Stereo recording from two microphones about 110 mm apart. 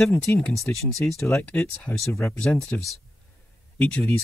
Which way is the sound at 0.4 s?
5° left (ahead or behind).